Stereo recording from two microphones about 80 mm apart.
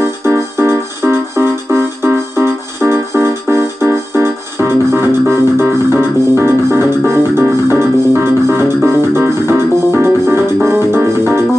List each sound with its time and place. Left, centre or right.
0.6 s music: right